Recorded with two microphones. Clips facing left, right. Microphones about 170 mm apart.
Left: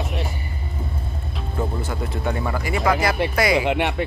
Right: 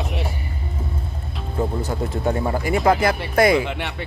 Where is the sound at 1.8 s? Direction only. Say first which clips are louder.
Right 3 dB; 35° right (ahead or behind).